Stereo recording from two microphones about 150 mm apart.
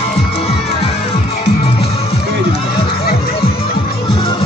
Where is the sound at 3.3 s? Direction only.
40° left (ahead or behind).